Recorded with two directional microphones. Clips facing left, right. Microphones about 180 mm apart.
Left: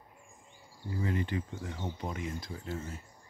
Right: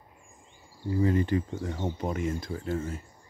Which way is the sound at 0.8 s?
35° right (ahead or behind).